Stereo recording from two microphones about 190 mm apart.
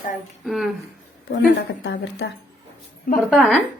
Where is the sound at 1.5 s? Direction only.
65° left (ahead or behind).